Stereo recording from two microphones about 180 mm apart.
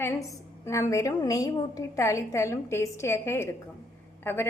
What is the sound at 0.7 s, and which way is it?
A woman's voice, 15° left (ahead or behind).